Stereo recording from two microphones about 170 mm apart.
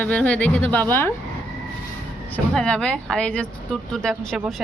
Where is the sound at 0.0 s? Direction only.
10° left (ahead or behind).